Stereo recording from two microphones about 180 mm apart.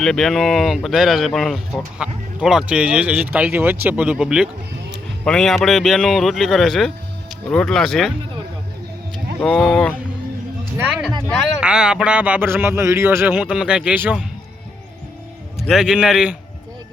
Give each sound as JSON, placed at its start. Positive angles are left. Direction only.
{"t": 0.0, "sound": "speech", "side_deg": 0}
{"t": 9.4, "sound": "speech", "side_deg": 5}
{"t": 11.3, "sound": "speech", "side_deg": -5}
{"t": 15.7, "sound": "speech", "side_deg": -5}